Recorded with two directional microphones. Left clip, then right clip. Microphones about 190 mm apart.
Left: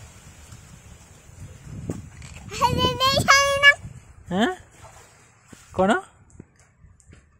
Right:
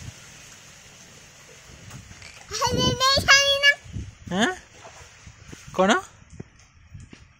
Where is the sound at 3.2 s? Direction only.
40° left (ahead or behind).